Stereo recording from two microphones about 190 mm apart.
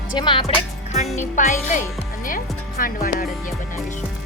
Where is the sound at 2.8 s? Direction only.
50° left (ahead or behind).